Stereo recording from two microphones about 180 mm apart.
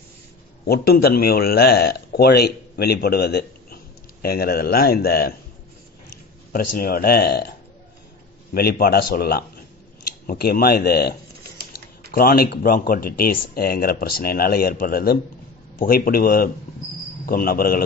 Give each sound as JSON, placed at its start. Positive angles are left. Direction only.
{"t": 0.7, "sound": "speech", "side_deg": 60}
{"t": 6.5, "sound": "speech", "side_deg": 55}
{"t": 8.5, "sound": "a man's voice", "side_deg": 55}